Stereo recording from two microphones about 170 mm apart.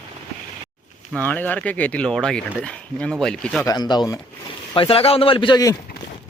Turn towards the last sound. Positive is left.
turn(degrees=20)  # may be behind; listen again after turning